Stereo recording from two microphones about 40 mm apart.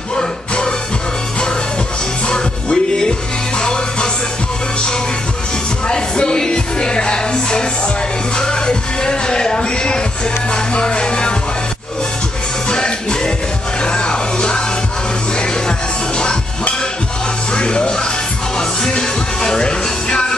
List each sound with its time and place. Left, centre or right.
0.2 s music: left
2.2 s music: centre
5.9 s music: centre
12.6 s music: centre
17.6 s music: left